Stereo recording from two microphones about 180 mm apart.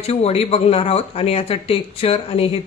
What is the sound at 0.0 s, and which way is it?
Speech, 35° left (ahead or behind).